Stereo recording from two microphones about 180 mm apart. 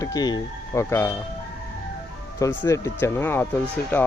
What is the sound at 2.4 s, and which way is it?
Speech, 15° left (ahead or behind).